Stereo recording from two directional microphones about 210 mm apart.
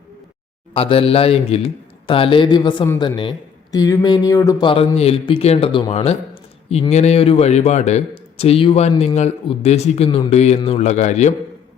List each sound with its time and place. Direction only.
0.7 s a man's voice: 25° left (ahead or behind)